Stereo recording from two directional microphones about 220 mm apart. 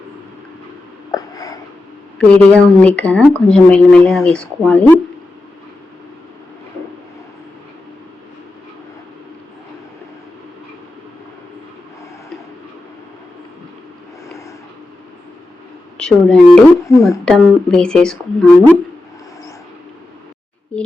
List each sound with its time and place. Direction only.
1.1 s a sound: 15° left (ahead or behind)
2.1 s speech: 5° left (ahead or behind)
16.0 s speech: 5° left (ahead or behind)
16.9 s speech: 15° left (ahead or behind)
17.2 s speech: 5° left (ahead or behind)
20.7 s speech: 5° left (ahead or behind)